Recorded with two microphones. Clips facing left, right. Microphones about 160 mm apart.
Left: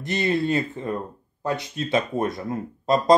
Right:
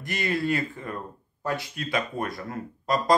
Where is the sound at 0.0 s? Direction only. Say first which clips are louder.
Left 4 dB; 25° left (ahead or behind).